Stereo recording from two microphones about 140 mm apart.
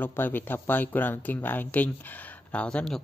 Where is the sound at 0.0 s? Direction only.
15° left (ahead or behind).